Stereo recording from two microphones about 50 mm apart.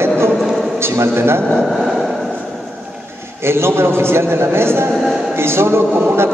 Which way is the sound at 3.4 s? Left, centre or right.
Right.